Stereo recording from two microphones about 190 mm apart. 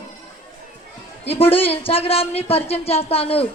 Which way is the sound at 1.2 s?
30° left (ahead or behind).